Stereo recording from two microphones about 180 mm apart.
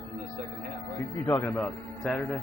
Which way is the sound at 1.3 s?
10° left (ahead or behind).